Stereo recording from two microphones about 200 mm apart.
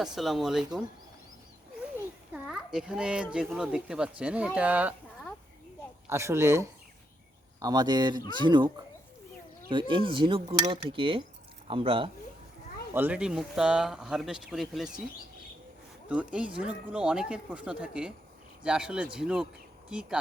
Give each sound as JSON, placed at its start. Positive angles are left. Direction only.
{"t": 0.0, "sound": "speech", "side_deg": 0}
{"t": 2.3, "sound": "speech", "side_deg": -5}
{"t": 12.9, "sound": "speech", "side_deg": -10}
{"t": 16.0, "sound": "speech", "side_deg": -5}